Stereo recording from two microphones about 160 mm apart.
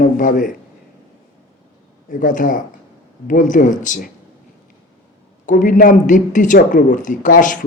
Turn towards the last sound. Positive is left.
turn(degrees=55)  # may be behind; listen again after turning